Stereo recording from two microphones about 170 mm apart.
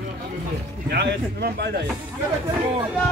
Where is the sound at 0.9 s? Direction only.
70° right (ahead or behind).